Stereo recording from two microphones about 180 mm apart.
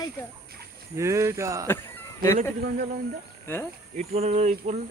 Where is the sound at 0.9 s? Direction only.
15° right (ahead or behind).